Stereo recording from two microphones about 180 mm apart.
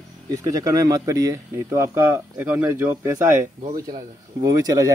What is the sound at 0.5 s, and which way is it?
Speech, 20° right (ahead or behind).